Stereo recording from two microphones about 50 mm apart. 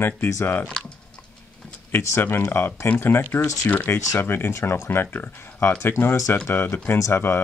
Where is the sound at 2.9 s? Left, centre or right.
Left.